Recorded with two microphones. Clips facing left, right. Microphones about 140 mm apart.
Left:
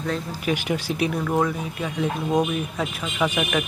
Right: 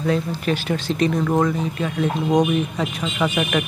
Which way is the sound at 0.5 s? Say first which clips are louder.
Right 1 dB; 15° left (ahead or behind).